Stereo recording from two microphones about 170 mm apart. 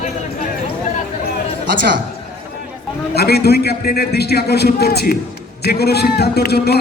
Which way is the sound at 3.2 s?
70° left (ahead or behind).